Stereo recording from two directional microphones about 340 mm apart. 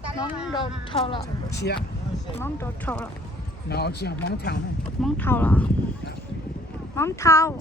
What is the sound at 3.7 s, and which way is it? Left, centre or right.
Speech, left.